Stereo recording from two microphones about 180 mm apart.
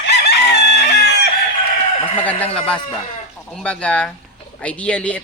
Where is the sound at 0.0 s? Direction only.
65° left (ahead or behind).